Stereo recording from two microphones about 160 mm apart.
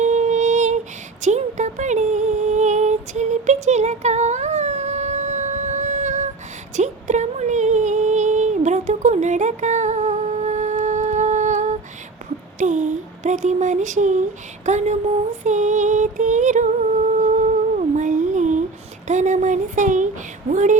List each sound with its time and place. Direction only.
0.0 s music: 45° right (ahead or behind)
6.7 s a sound: 45° right (ahead or behind)
12.5 s speech: 50° right (ahead or behind)
15.4 s music: 50° right (ahead or behind)
17.7 s a sound: 50° right (ahead or behind)
20.5 s music: 50° right (ahead or behind)